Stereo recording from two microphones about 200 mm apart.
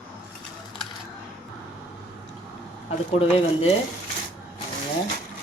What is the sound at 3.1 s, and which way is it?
Speech, 30° left (ahead or behind).